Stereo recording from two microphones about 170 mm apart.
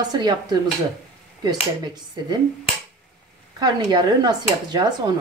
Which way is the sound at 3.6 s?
25° right (ahead or behind).